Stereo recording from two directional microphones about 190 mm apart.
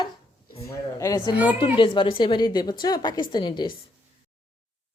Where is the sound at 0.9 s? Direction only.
20° left (ahead or behind).